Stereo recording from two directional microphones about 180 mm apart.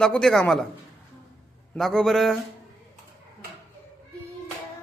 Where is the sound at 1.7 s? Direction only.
5° left (ahead or behind).